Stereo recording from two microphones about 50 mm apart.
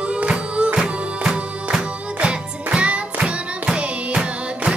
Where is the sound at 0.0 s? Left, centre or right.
Right.